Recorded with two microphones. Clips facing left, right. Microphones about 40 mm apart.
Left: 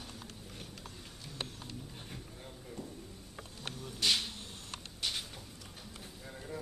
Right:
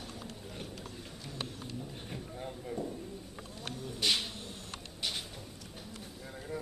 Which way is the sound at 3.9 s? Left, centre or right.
Centre.